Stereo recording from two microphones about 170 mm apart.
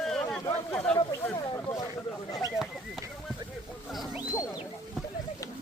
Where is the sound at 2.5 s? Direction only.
Centre (ahead or behind).